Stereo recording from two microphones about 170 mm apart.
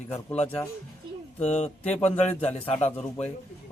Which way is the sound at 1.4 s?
40° left (ahead or behind).